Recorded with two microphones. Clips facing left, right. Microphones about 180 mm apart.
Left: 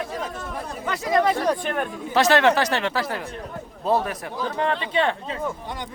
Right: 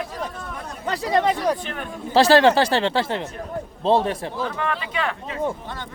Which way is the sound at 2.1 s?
30° right (ahead or behind).